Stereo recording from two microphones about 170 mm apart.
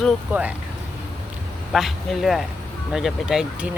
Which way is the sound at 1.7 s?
Centre (ahead or behind).